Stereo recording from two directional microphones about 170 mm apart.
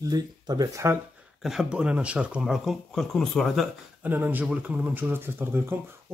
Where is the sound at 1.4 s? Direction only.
5° right (ahead or behind).